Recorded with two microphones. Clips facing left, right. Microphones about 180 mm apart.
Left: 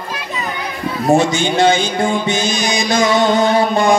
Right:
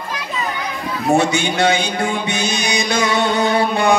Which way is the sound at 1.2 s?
60° right (ahead or behind).